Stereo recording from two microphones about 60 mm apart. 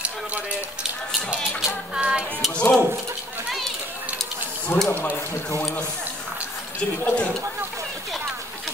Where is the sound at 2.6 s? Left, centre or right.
Centre.